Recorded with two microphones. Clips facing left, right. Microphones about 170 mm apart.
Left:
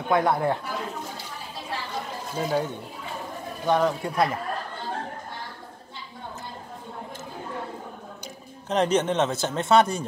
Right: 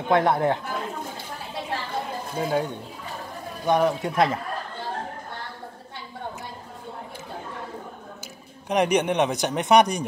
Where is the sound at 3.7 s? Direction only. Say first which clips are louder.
Right 1 dB; 15° right (ahead or behind).